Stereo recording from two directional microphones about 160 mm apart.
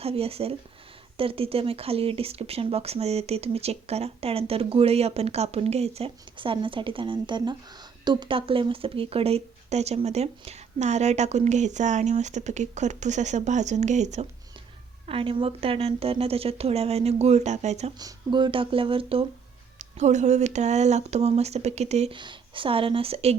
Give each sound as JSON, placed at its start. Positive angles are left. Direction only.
{"t": 0.0, "sound": "speech", "side_deg": -40}
{"t": 15.0, "sound": "speech", "side_deg": -35}
{"t": 18.0, "sound": "speech", "side_deg": -30}
{"t": 19.8, "sound": "speech", "side_deg": -45}
{"t": 22.2, "sound": "speech", "side_deg": -30}